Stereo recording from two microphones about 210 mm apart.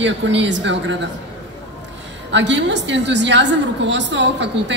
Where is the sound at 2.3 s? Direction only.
55° right (ahead or behind).